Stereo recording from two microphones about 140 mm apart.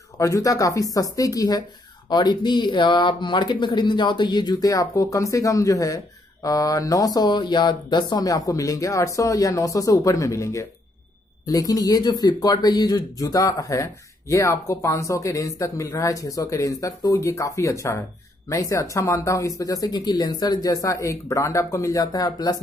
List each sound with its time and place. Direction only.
0.2 s speech: 25° left (ahead or behind)